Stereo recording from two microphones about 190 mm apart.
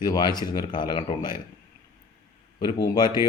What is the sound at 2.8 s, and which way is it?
Speech, 25° left (ahead or behind).